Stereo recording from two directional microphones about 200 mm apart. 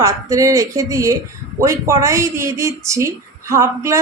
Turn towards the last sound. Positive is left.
turn(degrees=-15)  # may be behind; listen again after turning